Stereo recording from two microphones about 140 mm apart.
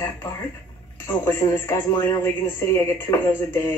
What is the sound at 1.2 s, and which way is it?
Speech, 20° left (ahead or behind).